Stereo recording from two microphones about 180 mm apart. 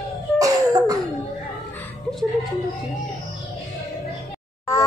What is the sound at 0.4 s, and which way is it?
Cough, 20° right (ahead or behind).